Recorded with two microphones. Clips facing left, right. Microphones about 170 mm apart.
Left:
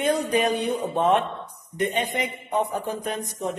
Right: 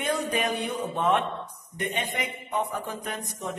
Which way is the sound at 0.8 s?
35° left (ahead or behind).